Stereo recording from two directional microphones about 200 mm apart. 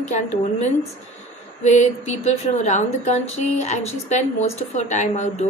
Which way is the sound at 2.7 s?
35° left (ahead or behind).